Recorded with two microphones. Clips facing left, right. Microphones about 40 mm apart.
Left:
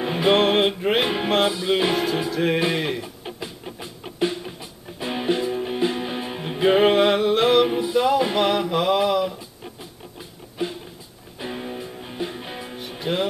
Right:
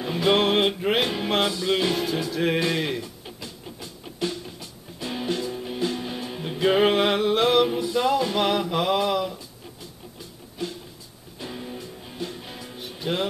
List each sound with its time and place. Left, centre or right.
0.0 s music: left
0.3 s music: centre
1.0 s music: left
2.3 s music: centre
3.3 s music: left
6.8 s a sound: centre
7.6 s music: centre
8.4 s mantra: centre
10.6 s music: left
13.0 s music: centre